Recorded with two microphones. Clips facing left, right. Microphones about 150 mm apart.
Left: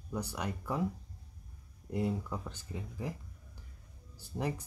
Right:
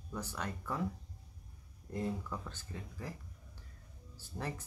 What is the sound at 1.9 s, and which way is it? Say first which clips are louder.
Speech: left 4 dB; 15° left (ahead or behind).